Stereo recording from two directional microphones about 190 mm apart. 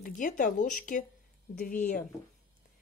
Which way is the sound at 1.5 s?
55° left (ahead or behind).